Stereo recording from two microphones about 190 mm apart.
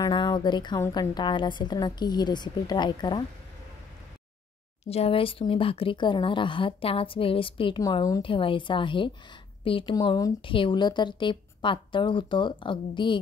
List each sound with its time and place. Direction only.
0.0 s speech: 25° left (ahead or behind)
4.8 s speech: 30° left (ahead or behind)